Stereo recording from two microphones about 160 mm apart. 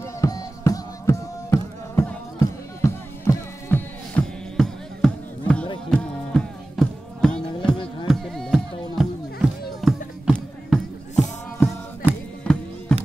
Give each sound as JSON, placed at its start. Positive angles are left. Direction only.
{"t": 0.0, "sound": "music", "side_deg": 20}
{"t": 7.7, "sound": "music", "side_deg": 30}
{"t": 8.1, "sound": "music", "side_deg": 0}